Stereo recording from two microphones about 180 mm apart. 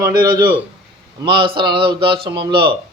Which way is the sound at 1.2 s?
25° right (ahead or behind).